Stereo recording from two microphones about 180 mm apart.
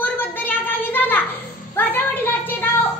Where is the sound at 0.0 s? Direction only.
10° left (ahead or behind).